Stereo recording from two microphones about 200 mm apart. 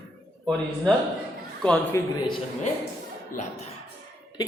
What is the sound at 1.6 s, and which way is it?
Speech, 5° left (ahead or behind).